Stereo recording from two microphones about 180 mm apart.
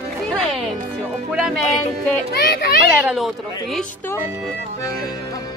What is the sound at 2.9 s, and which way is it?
Speech, 5° right (ahead or behind).